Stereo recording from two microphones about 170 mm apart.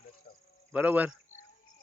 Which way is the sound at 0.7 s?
10° right (ahead or behind).